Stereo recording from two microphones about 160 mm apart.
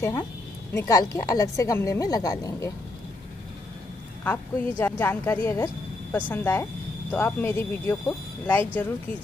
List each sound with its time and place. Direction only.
0.7 s a woman's voice: 20° left (ahead or behind)
4.2 s speech: 10° left (ahead or behind)